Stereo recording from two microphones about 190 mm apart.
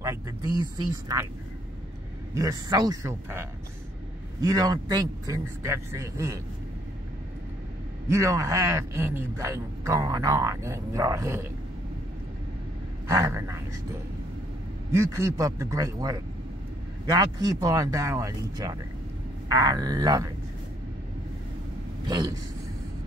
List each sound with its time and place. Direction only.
0.0 s speech: 15° right (ahead or behind)
2.3 s a man's voice: 20° right (ahead or behind)
8.1 s a man's voice: 15° right (ahead or behind)
13.0 s a man's voice: 15° right (ahead or behind)
14.9 s a man's voice: 15° right (ahead or behind)
22.0 s speech: 20° right (ahead or behind)